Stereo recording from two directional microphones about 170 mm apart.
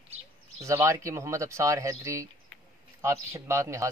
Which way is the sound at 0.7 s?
15° right (ahead or behind).